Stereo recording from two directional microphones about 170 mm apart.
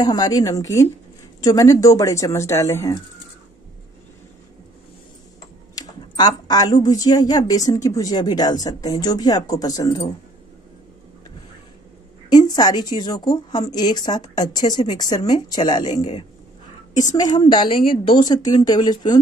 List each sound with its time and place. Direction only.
0.0 s a woman's voice: 25° left (ahead or behind)
5.8 s a woman's voice: 25° left (ahead or behind)
12.3 s a woman's voice: 25° left (ahead or behind)
15.9 s a man's voice: 40° left (ahead or behind)
17.1 s a woman's voice: 25° left (ahead or behind)